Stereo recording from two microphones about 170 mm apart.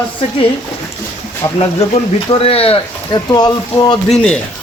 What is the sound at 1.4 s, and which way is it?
Speech, 35° left (ahead or behind).